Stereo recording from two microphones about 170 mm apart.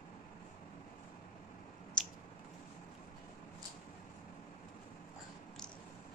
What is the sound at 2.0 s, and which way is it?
Squish, 5° left (ahead or behind).